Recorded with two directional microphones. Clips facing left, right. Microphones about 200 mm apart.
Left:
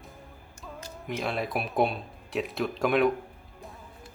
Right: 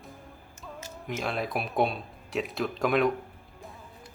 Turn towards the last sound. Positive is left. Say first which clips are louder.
# left 1 dB
turn(degrees=0)  # may be behind; listen again after turning